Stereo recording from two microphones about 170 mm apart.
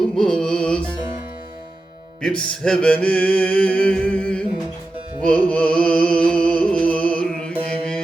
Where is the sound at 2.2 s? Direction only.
5° left (ahead or behind).